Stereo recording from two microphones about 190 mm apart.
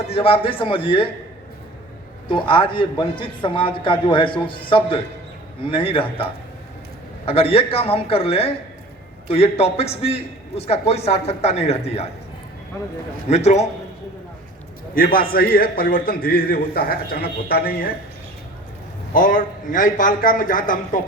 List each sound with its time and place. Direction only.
0.1 s a man's voice: 30° left (ahead or behind)
2.2 s a man's voice: 25° left (ahead or behind)
7.3 s a man's voice: 30° left (ahead or behind)
13.3 s a man's voice: 35° left (ahead or behind)
14.9 s a man's voice: 50° left (ahead or behind)
19.1 s a man's voice: 45° left (ahead or behind)